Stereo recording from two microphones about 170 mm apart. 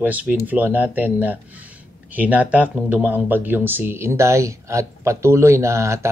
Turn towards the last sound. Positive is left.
turn(degrees=-15)  # may be behind; listen again after turning